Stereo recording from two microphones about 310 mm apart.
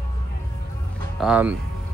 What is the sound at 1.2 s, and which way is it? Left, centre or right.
Speech, centre.